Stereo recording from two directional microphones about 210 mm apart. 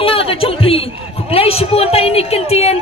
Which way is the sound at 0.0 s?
25° left (ahead or behind).